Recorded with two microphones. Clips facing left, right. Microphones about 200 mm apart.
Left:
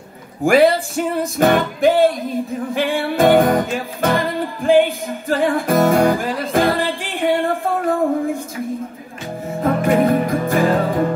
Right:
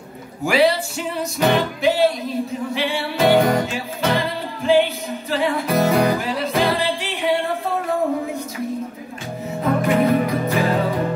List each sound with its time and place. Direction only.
0.4 s music: 50° left (ahead or behind)
9.6 s music: 50° left (ahead or behind)